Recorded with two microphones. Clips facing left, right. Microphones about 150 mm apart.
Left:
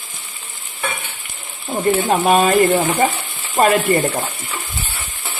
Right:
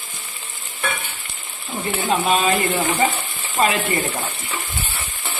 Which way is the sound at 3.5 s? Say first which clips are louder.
Left 5 dB; 55° left (ahead or behind).